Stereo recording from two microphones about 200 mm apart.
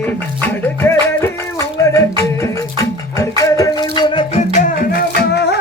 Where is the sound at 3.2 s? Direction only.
15° left (ahead or behind); by 5.0 s 40° left (ahead or behind).